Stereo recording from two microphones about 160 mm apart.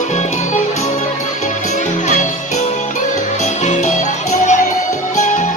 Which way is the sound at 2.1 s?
45° left (ahead or behind).